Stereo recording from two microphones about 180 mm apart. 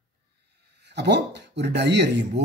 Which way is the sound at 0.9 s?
70° right (ahead or behind).